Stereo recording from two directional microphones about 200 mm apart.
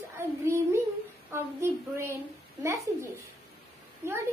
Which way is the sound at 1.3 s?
15° right (ahead or behind).